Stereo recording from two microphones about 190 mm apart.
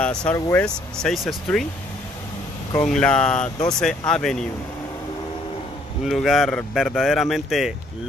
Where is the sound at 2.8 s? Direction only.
5° left (ahead or behind).